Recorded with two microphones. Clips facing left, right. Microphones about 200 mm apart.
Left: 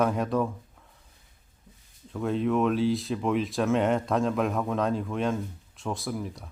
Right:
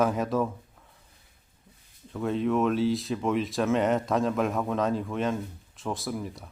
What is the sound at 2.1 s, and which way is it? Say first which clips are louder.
Speech: even; centre (ahead or behind).